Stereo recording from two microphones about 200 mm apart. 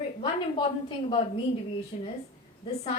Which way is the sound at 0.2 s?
25° left (ahead or behind).